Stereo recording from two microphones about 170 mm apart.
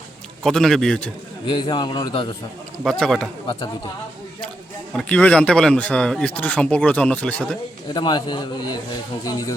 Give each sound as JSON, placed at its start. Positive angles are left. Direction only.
{"t": 0.4, "sound": "a man's voice", "side_deg": 0}
{"t": 1.5, "sound": "a man's voice", "side_deg": 25}
{"t": 2.8, "sound": "a man's voice", "side_deg": 5}
{"t": 3.4, "sound": "speech", "side_deg": 30}
{"t": 4.9, "sound": "speech", "side_deg": 10}
{"t": 7.9, "sound": "a man's voice", "side_deg": 25}